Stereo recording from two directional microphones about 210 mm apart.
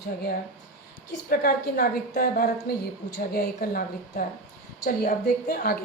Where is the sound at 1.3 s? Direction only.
45° left (ahead or behind).